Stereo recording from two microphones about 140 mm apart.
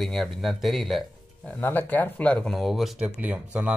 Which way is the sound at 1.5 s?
15° left (ahead or behind).